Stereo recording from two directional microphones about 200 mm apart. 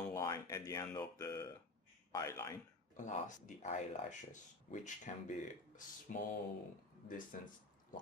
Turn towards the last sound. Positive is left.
turn(degrees=40)  # may be behind; listen again after turning